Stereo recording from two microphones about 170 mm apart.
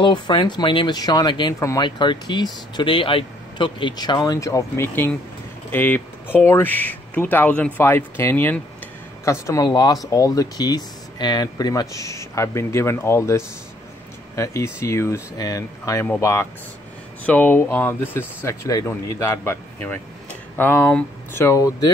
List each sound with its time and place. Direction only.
0.0 s speech: 30° left (ahead or behind)